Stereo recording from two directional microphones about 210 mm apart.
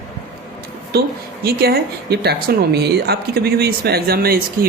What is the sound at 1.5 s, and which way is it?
Speech, 45° right (ahead or behind).